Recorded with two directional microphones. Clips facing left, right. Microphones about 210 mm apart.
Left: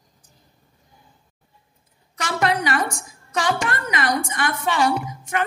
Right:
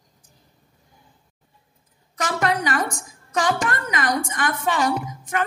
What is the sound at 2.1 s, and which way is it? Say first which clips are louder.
A woman's voice: left 1 dB; 40° right (ahead or behind).